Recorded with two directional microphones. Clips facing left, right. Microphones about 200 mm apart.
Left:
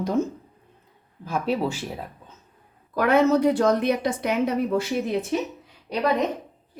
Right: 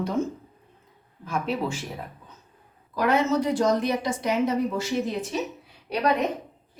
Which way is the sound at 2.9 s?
55° left (ahead or behind).